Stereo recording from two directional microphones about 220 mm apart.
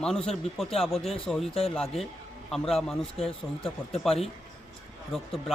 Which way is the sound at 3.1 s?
25° left (ahead or behind).